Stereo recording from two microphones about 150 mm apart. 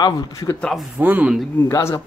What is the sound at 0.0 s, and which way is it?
Speech, 25° left (ahead or behind).